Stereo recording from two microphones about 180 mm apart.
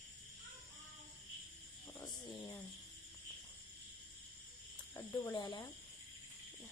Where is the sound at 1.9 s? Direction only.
20° left (ahead or behind).